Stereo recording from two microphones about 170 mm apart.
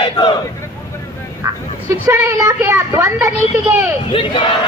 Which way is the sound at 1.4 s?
20° right (ahead or behind).